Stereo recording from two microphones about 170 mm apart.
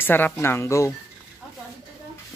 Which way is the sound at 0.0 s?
10° left (ahead or behind).